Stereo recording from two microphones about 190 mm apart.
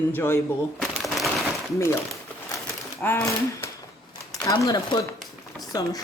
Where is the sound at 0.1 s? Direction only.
10° left (ahead or behind).